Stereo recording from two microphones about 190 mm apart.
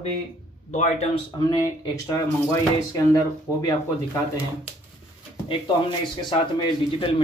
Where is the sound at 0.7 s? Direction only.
40° left (ahead or behind).